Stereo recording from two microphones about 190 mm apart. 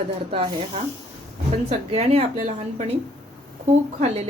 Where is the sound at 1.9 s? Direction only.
35° right (ahead or behind).